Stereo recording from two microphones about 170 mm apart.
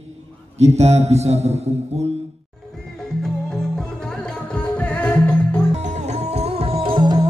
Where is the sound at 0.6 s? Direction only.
40° right (ahead or behind).